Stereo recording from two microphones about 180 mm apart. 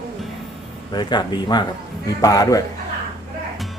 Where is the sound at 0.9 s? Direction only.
25° left (ahead or behind).